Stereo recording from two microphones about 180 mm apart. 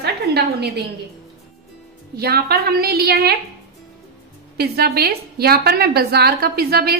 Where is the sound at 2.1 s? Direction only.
60° right (ahead or behind).